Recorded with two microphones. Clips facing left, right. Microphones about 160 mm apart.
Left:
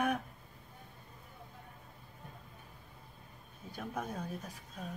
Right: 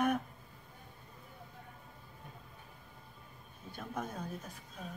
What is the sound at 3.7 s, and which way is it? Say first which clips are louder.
Speech: left 1 dB; 10° left (ahead or behind).